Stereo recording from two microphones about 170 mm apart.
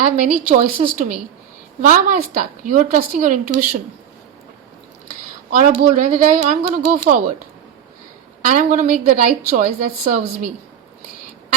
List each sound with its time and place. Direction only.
0.0 s a woman's voice: 45° right (ahead or behind)
5.5 s a woman's voice: 50° right (ahead or behind)
8.4 s a woman's voice: 50° right (ahead or behind)